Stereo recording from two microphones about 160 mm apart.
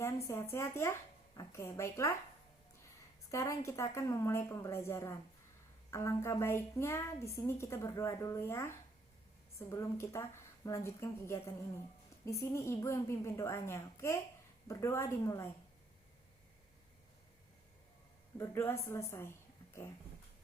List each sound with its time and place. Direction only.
0.3 s a woman's voice: 15° left (ahead or behind)
3.3 s a woman's voice: 20° left (ahead or behind)
18.3 s a woman's voice: 15° left (ahead or behind)